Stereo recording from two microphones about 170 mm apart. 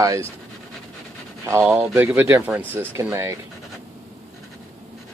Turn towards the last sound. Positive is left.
turn(degrees=-15)  # may be behind; listen again after turning